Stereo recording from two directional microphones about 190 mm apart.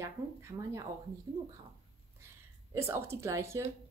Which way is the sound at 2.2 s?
15° right (ahead or behind).